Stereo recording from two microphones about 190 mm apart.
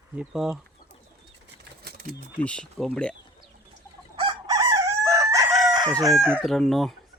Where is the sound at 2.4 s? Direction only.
5° left (ahead or behind).